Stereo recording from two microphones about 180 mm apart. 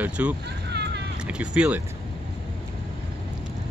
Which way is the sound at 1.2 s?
5° right (ahead or behind).